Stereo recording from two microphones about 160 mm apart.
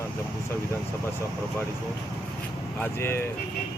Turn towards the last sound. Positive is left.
turn(degrees=15)  # may be behind; listen again after turning